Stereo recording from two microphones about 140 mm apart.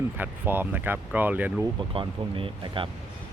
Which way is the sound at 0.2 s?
15° right (ahead or behind).